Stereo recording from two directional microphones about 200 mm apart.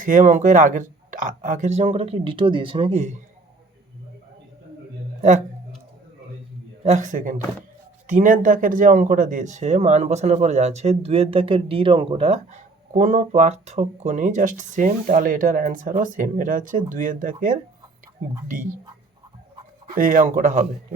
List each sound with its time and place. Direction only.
0.0 s speech: 40° right (ahead or behind)
6.8 s speech: 35° right (ahead or behind)
19.9 s speech: 40° right (ahead or behind)